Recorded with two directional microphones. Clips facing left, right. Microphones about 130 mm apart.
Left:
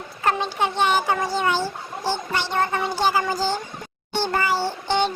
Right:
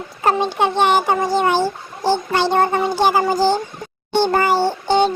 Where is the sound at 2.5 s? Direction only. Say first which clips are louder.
Right 5 dB; 35° right (ahead or behind).